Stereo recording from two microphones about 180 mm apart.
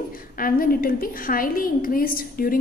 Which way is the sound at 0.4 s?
50° left (ahead or behind).